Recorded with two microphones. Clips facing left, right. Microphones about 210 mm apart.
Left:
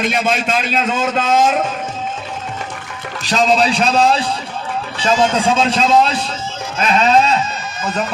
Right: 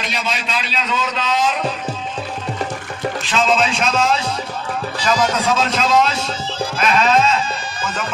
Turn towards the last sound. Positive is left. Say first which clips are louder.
# left 2 dB
turn(degrees=35)  # may be behind; listen again after turning